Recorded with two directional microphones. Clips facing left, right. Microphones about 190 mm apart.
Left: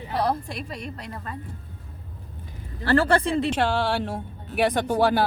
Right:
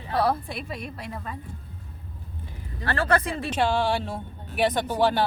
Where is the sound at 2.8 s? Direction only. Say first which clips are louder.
Left 4 dB; 30° left (ahead or behind).